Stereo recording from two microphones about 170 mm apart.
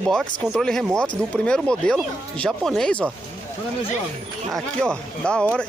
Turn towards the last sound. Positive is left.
turn(degrees=5)  # may be behind; listen again after turning